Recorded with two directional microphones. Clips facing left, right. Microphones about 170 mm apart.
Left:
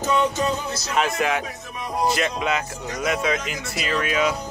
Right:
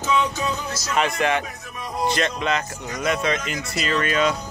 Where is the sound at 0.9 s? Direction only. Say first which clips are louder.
Right 1 dB; centre (ahead or behind).